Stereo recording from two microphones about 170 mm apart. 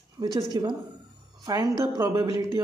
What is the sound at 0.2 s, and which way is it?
Speech, 25° right (ahead or behind).